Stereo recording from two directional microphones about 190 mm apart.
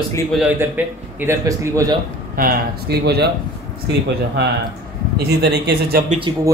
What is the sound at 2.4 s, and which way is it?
Speech, 50° right (ahead or behind).